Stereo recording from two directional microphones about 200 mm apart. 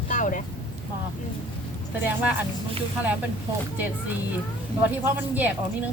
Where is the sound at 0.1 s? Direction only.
40° left (ahead or behind).